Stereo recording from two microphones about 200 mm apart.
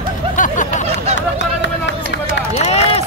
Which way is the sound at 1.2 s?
65° left (ahead or behind).